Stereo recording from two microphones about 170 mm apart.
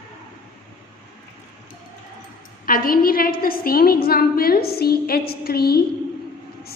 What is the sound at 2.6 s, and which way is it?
A woman's voice, 60° left (ahead or behind).